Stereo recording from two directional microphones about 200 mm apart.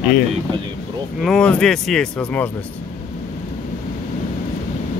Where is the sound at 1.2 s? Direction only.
5° left (ahead or behind).